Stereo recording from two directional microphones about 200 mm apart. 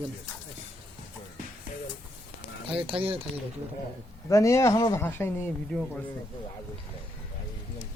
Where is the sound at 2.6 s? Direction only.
25° right (ahead or behind).